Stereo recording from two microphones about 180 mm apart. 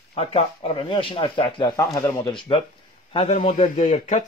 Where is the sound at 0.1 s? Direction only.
35° left (ahead or behind).